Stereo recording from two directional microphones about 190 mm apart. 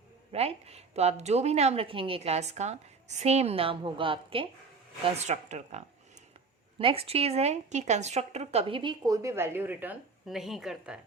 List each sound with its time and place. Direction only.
0.3 s a woman's voice: 35° right (ahead or behind); by 11.0 s 5° right (ahead or behind)